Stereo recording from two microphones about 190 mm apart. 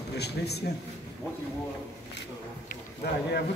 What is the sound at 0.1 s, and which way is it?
Speech, 60° left (ahead or behind).